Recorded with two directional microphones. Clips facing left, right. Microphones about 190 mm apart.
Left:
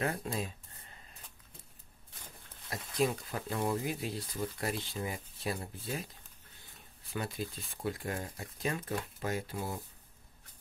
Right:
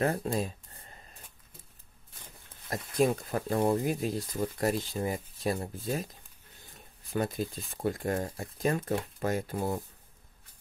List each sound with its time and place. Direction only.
0.0 s a sound: 40° right (ahead or behind)
2.7 s speech: 50° right (ahead or behind)
7.1 s speech: 45° right (ahead or behind)